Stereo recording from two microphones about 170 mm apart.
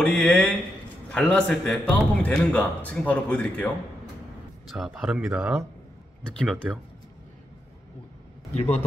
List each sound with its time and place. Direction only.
0.0 s a man's voice: 5° left (ahead or behind)